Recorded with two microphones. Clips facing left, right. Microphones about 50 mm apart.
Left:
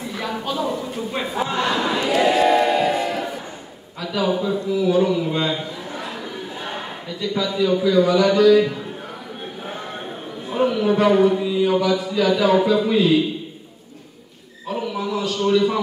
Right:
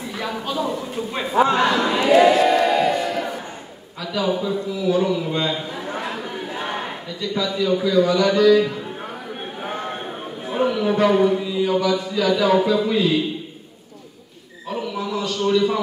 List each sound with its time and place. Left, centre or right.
0.1 s a sound: centre
2.0 s crowd: right
2.3 s choir: centre
4.0 s speech: centre
5.7 s chatter: right
7.1 s speech: centre
10.5 s speech: centre
14.7 s speech: centre